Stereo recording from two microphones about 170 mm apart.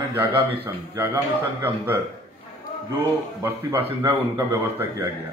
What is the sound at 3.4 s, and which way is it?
Speech, 15° right (ahead or behind).